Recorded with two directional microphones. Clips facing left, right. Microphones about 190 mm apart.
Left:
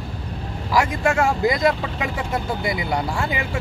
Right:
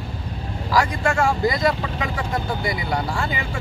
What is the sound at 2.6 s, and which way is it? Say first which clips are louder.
Speech: left 1 dB; 20° left (ahead or behind).